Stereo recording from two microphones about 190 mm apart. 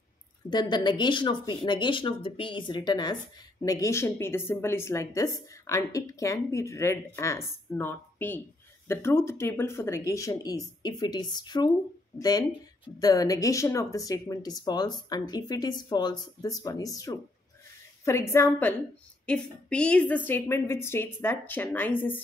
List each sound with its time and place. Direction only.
0.5 s a woman's voice: 20° left (ahead or behind)